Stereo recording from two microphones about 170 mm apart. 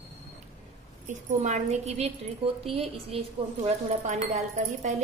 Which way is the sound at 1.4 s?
40° right (ahead or behind).